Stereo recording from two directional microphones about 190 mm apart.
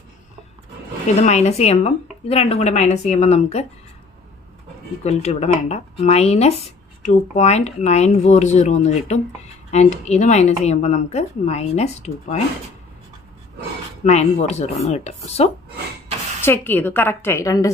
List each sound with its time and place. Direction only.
1.0 s speech: 35° left (ahead or behind)
5.0 s speech: 35° left (ahead or behind)
14.0 s speech: 35° left (ahead or behind)
16.4 s a woman's voice: 10° left (ahead or behind)